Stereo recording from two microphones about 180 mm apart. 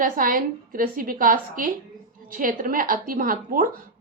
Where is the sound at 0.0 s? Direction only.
50° right (ahead or behind).